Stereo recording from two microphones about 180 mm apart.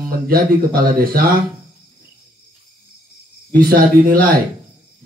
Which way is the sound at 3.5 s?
55° right (ahead or behind).